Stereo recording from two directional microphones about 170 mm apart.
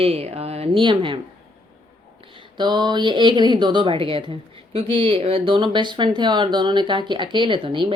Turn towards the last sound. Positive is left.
turn(degrees=-30)  # may be behind; listen again after turning